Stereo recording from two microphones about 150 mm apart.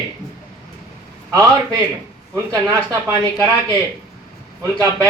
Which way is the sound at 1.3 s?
25° right (ahead or behind).